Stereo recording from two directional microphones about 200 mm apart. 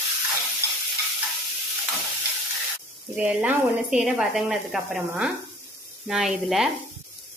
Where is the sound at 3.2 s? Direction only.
5° right (ahead or behind).